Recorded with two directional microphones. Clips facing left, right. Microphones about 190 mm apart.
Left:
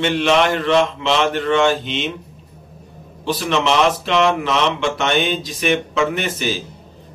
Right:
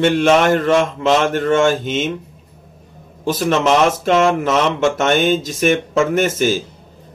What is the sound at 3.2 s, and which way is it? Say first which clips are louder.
A man's voice: right 3 dB; 45° right (ahead or behind).